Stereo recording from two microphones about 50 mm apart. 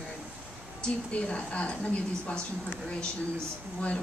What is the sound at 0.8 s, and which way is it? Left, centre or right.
A woman's voice, left.